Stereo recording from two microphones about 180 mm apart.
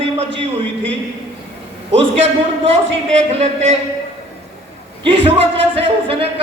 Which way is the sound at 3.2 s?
35° right (ahead or behind).